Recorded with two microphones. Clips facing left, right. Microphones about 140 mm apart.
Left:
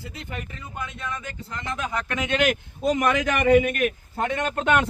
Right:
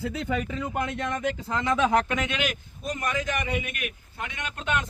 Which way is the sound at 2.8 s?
85° left.